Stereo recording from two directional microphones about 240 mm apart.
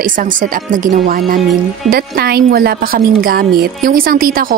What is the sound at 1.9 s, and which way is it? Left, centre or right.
Speech, right.